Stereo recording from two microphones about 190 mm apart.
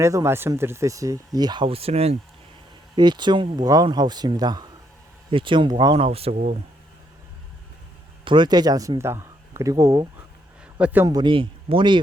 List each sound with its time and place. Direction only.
0.0 s speech: 15° right (ahead or behind); by 2.1 s 35° right (ahead or behind)
2.9 s speech: 25° right (ahead or behind)
6.3 s speech: 50° right (ahead or behind)
8.2 s speech: 25° right (ahead or behind)
10.8 s a man's voice: 5° right (ahead or behind)
11.0 s speech: 20° right (ahead or behind)